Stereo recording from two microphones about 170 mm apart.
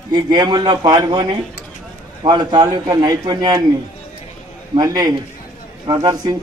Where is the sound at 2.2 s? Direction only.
25° right (ahead or behind).